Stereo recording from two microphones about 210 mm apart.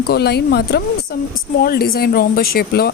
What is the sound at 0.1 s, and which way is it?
Speech, 50° left (ahead or behind).